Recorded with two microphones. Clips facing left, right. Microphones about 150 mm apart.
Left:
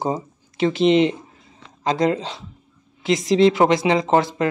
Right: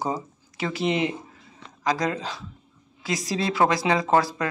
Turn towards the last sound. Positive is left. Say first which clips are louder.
# left 3 dB
turn(degrees=20)  # may be behind; listen again after turning